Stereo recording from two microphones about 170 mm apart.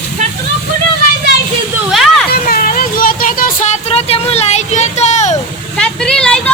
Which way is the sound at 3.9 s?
35° left (ahead or behind).